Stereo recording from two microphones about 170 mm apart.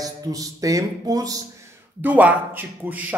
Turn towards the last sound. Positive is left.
turn(degrees=-10)  # may be behind; listen again after turning